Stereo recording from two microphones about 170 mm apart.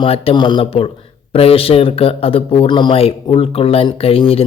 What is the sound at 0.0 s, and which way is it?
Speech, 30° left (ahead or behind).